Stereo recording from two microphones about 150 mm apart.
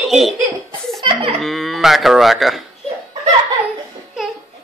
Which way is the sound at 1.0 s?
40° right (ahead or behind).